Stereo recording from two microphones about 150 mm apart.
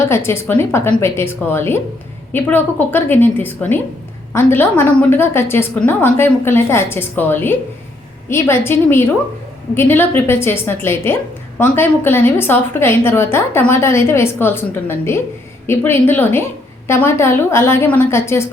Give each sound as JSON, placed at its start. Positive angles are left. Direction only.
{"t": 0.0, "sound": "a woman's voice", "side_deg": 15}